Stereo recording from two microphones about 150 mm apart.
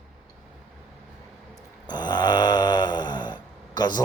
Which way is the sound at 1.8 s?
30° left (ahead or behind).